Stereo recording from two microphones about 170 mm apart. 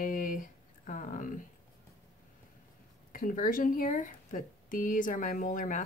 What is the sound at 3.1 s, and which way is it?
Speech, 50° left (ahead or behind).